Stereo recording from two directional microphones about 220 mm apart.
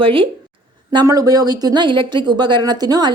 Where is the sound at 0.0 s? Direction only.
25° right (ahead or behind).